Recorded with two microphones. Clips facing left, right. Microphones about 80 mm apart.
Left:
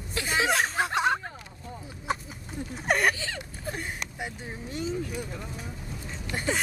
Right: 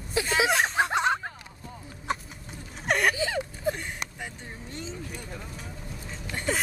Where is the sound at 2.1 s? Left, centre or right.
Centre.